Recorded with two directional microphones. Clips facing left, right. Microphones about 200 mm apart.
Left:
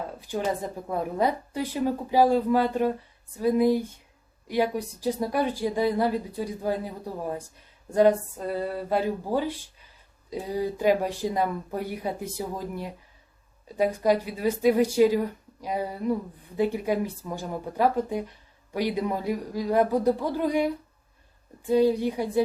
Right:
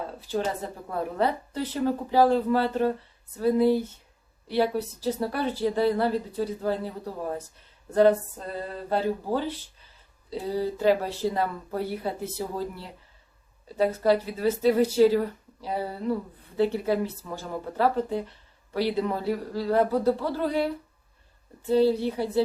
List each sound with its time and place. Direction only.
0.9 s speech: 15° left (ahead or behind)
21.7 s speech: 15° left (ahead or behind)